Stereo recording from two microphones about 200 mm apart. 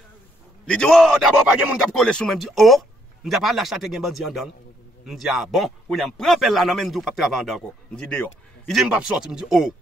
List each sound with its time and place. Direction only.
0.7 s a man's voice: 5° left (ahead or behind)